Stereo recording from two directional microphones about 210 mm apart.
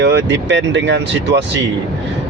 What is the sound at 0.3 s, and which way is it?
Speech, 55° right (ahead or behind).